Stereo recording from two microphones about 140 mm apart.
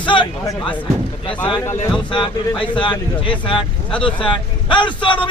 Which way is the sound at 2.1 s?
35° left (ahead or behind).